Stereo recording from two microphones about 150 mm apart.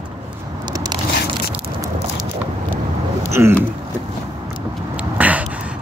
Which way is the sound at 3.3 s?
15° right (ahead or behind).